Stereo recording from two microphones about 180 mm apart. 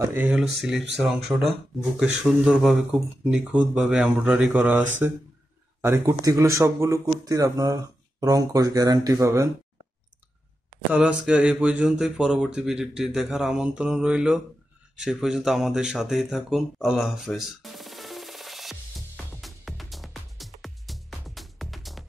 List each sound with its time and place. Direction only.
0.0 s speech: 10° right (ahead or behind)
10.9 s speech: 5° right (ahead or behind)
15.0 s a sound: 5° right (ahead or behind)